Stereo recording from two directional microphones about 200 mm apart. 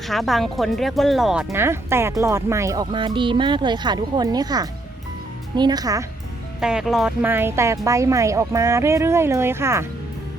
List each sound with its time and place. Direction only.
0.1 s speech: centre (ahead or behind); by 6.1 s 15° right (ahead or behind)
6.6 s speech: 5° right (ahead or behind)